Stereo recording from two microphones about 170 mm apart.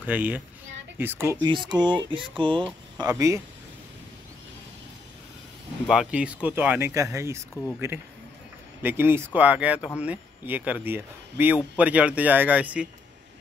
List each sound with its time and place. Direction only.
0.0 s speech: 10° right (ahead or behind)
1.4 s speech: 25° right (ahead or behind)
3.0 s speech: 20° right (ahead or behind)
5.9 s speech: 5° right (ahead or behind)
8.8 s speech: 15° right (ahead or behind)